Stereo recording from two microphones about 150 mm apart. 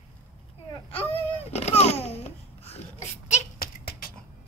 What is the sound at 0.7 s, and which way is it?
Babbling, 35° left (ahead or behind).